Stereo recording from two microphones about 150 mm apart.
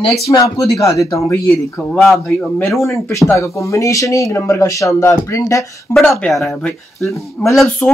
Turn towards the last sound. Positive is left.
turn(degrees=0)  # may be behind; listen again after turning